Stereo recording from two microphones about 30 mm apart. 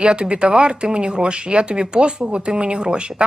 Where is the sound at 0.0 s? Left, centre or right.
Right.